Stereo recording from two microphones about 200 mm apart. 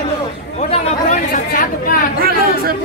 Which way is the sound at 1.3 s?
45° left (ahead or behind).